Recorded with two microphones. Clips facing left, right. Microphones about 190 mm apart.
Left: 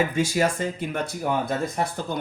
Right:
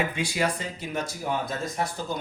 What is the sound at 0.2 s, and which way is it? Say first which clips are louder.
Speech: left 5 dB; 45° left (ahead or behind).